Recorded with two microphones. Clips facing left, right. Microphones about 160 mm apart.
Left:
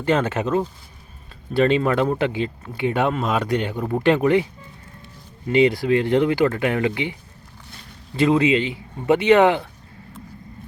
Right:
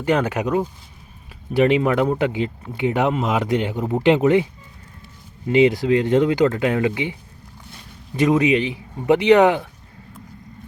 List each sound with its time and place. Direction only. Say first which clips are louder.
0.0 s speech: right 1 dB; 15° right (ahead or behind)
5.5 s speech: right 1 dB; 20° right (ahead or behind)